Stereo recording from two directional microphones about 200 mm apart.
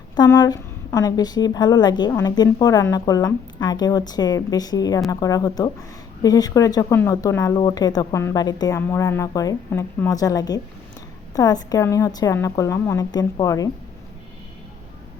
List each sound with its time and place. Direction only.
0.2 s a woman's voice: 20° left (ahead or behind)